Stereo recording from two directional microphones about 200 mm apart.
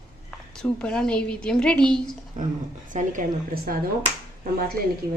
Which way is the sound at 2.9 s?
40° right (ahead or behind).